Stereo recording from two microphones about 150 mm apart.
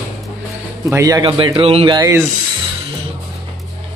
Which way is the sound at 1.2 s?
35° right (ahead or behind).